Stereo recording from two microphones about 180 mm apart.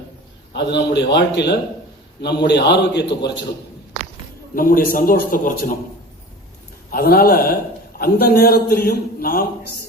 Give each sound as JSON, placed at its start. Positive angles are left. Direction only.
{"t": 0.5, "sound": "a man's voice", "side_deg": 70}
{"t": 4.5, "sound": "a man's voice", "side_deg": 50}
{"t": 6.9, "sound": "a man's voice", "side_deg": 55}